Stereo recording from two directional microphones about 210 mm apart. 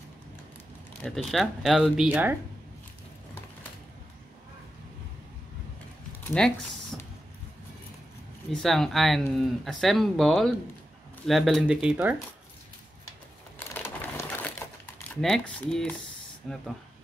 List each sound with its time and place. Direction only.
1.0 s speech: centre (ahead or behind)
6.4 s speech: 5° left (ahead or behind)
8.5 s speech: centre (ahead or behind)
13.6 s crumpling: 10° left (ahead or behind)
15.0 s speech: centre (ahead or behind)